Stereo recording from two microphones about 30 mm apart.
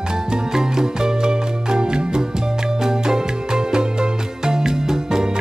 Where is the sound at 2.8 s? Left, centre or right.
Centre.